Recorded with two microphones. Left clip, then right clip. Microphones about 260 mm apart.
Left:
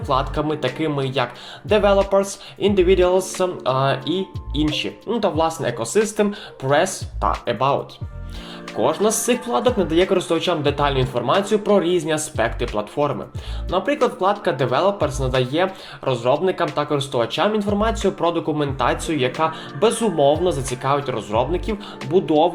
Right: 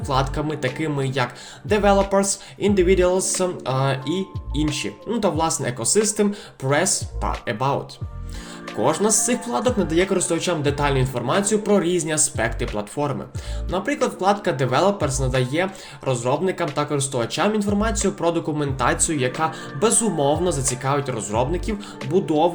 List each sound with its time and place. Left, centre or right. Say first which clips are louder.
0.1 s speech: left 2 dB; right
8.8 s speech: left 1 dB; right
13.7 s speech: left 4 dB; right